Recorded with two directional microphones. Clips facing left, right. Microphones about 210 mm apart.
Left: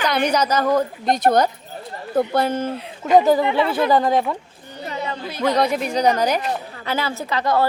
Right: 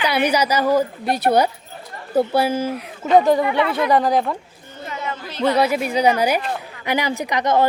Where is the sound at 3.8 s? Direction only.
Centre (ahead or behind).